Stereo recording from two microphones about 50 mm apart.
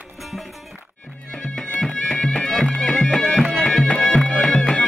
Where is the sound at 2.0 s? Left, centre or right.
Centre.